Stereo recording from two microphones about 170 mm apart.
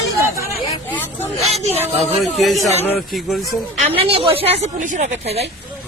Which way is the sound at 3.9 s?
35° right (ahead or behind).